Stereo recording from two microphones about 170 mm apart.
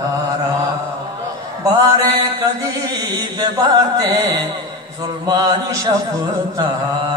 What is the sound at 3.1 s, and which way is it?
Music, 25° right (ahead or behind).